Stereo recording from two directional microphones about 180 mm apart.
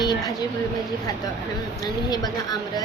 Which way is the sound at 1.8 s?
20° left (ahead or behind).